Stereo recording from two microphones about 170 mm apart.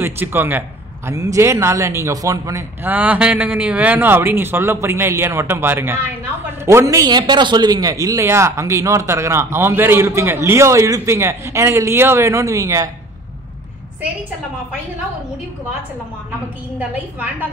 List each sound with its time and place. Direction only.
0.0 s a man's voice: 10° right (ahead or behind)